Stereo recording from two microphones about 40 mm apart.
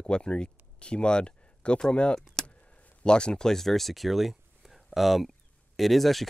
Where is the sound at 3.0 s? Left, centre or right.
Left; by 6.2 s centre.